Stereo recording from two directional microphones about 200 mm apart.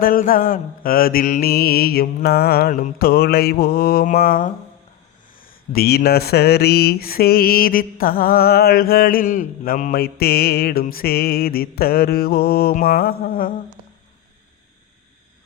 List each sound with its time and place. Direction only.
0.0 s speech: 45° left (ahead or behind)